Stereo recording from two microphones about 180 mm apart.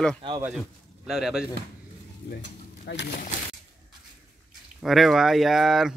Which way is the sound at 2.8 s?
70° left (ahead or behind).